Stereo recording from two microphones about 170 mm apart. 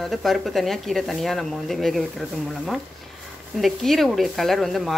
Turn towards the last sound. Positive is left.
turn(degrees=0)  # may be behind; listen again after turning